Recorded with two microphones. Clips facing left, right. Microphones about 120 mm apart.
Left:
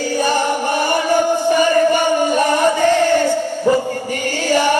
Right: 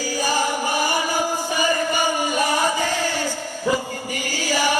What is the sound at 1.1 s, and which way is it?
Music, 60° left (ahead or behind).